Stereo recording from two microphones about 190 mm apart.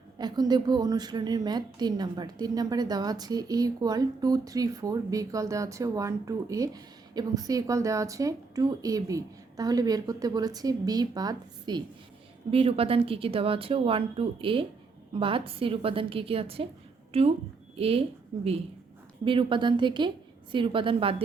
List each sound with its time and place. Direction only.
0.2 s a woman's voice: 20° right (ahead or behind)